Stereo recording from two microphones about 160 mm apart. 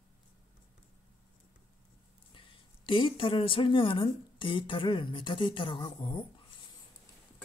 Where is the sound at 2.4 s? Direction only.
30° left (ahead or behind).